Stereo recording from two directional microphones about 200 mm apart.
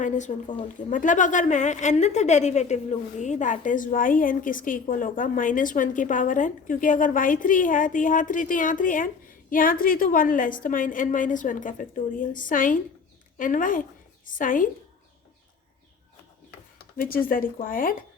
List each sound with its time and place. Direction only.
0.0 s a woman's voice: 40° left (ahead or behind)
17.0 s a woman's voice: 45° left (ahead or behind)